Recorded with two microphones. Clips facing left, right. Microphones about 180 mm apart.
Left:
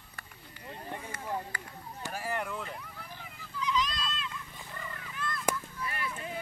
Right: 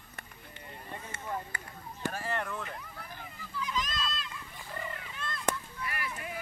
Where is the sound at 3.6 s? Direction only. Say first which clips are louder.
Left 3 dB; 50° right (ahead or behind).